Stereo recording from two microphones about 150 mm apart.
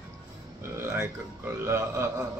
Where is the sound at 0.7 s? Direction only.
15° right (ahead or behind).